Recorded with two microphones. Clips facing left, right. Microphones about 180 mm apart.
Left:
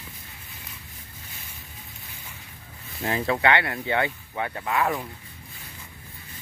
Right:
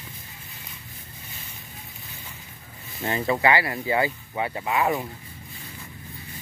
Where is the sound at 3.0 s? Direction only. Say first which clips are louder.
Right 1 dB; centre (ahead or behind).